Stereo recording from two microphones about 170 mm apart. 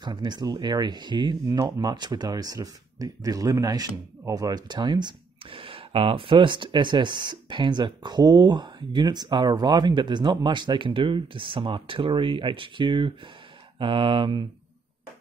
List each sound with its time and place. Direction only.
0.0 s speech: 25° right (ahead or behind)